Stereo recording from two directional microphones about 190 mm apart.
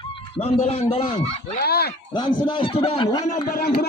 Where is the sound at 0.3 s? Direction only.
30° left (ahead or behind).